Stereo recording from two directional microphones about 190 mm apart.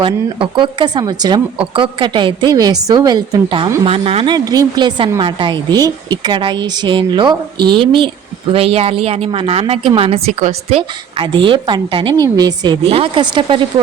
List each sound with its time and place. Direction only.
0.0 s speech: 25° right (ahead or behind)